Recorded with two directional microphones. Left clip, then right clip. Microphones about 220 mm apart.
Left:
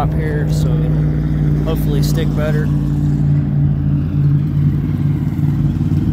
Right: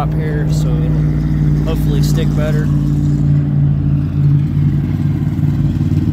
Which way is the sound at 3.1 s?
35° right (ahead or behind).